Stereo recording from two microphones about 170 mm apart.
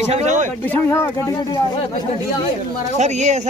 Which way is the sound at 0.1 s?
40° right (ahead or behind).